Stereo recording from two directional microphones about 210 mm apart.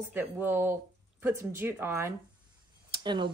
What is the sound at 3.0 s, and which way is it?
Speech, 20° right (ahead or behind).